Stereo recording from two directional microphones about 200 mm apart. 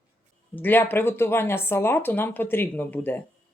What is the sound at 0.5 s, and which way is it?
Speech, 10° left (ahead or behind).